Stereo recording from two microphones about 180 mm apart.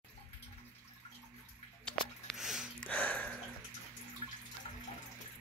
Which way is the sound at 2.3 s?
Centre (ahead or behind).